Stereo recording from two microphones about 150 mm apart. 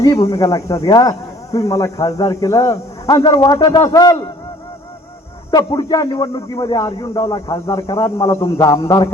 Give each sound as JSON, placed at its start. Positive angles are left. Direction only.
{"t": 0.0, "sound": "speech", "side_deg": 20}
{"t": 5.5, "sound": "speech", "side_deg": 25}